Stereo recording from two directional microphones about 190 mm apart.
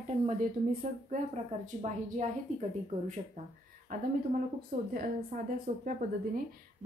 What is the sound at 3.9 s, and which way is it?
A woman's voice, 45° right (ahead or behind).